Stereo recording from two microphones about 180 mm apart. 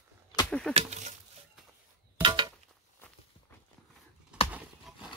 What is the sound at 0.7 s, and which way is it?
Speech, 40° right (ahead or behind).